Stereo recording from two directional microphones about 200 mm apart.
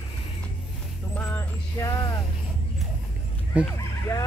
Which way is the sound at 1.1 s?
10° left (ahead or behind).